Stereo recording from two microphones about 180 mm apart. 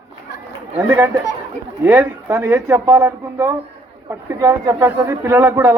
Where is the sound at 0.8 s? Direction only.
10° right (ahead or behind).